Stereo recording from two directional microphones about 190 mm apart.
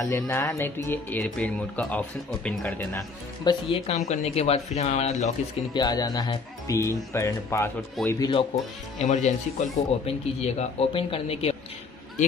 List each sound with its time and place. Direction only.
0.0 s speech: 15° left (ahead or behind)
3.8 s speech: 35° left (ahead or behind)
5.7 s speech: 20° left (ahead or behind)
8.2 s speech: 25° left (ahead or behind)
8.9 s speech: 35° left (ahead or behind)